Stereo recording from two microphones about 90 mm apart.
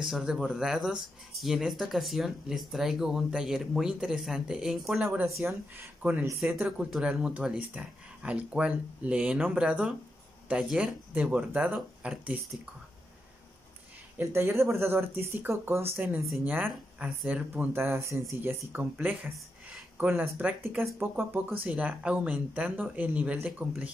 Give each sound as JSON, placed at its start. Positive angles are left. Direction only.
{"t": 0.0, "sound": "speech", "side_deg": -5}
{"t": 5.2, "sound": "speech", "side_deg": -30}
{"t": 6.9, "sound": "speech", "side_deg": -10}
{"t": 14.1, "sound": "speech", "side_deg": -25}